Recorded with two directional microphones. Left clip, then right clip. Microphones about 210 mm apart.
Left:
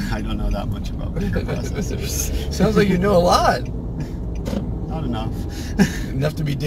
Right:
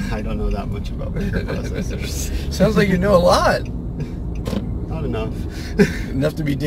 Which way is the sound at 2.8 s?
20° right (ahead or behind).